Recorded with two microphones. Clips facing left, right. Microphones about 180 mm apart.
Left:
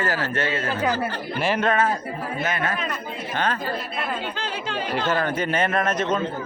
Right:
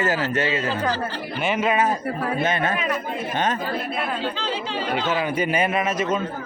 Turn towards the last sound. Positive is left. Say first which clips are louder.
# even
turn(degrees=-5)  # may be behind; listen again after turning